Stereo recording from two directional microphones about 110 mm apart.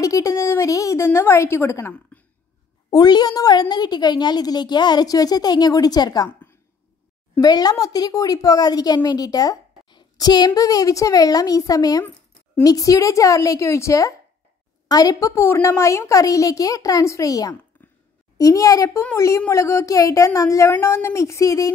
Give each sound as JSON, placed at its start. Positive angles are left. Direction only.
{"t": 0.0, "sound": "a woman's voice", "side_deg": 30}
{"t": 2.9, "sound": "speech", "side_deg": 40}
{"t": 7.3, "sound": "a woman's voice", "side_deg": 35}